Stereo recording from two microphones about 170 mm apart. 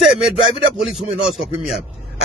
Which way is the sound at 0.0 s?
Centre (ahead or behind).